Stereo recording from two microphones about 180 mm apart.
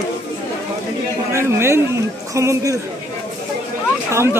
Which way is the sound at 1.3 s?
15° right (ahead or behind).